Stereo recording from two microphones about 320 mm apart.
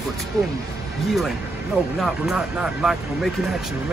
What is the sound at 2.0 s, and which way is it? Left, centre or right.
Speech, centre.